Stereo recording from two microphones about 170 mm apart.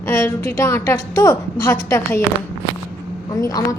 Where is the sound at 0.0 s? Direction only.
15° left (ahead or behind).